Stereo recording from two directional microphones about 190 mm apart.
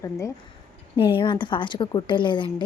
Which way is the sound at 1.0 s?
25° left (ahead or behind).